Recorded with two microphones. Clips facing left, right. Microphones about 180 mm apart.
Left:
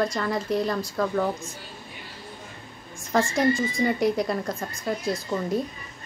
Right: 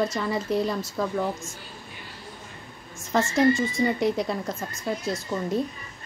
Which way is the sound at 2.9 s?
Centre (ahead or behind).